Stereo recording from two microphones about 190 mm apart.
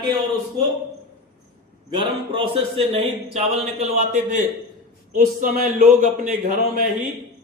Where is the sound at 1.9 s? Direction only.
25° right (ahead or behind); by 6.6 s 45° right (ahead or behind).